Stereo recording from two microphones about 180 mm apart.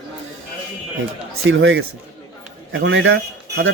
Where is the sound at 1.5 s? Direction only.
90° right.